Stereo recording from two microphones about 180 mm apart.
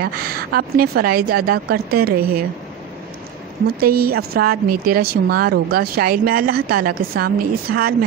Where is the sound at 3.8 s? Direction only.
60° right (ahead or behind).